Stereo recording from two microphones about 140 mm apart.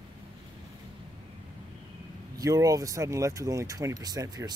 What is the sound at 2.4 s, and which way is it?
Speech, 25° right (ahead or behind).